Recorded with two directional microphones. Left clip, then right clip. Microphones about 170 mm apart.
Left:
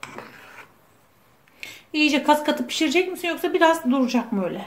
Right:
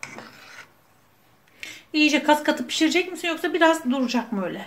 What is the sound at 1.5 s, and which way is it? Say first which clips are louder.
A woman's voice: right 1 dB; centre (ahead or behind).